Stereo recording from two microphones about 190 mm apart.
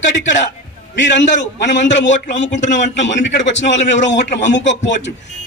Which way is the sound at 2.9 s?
70° left (ahead or behind).